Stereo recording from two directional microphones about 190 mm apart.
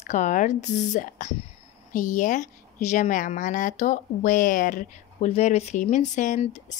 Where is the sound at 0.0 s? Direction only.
40° left (ahead or behind).